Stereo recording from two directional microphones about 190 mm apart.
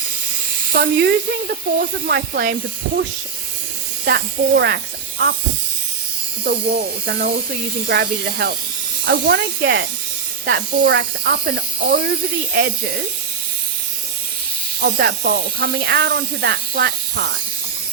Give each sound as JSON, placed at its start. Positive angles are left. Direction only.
{"t": 0.7, "sound": "speech", "side_deg": -60}
{"t": 4.0, "sound": "speech", "side_deg": -60}
{"t": 6.4, "sound": "speech", "side_deg": -50}
{"t": 14.8, "sound": "speech", "side_deg": -55}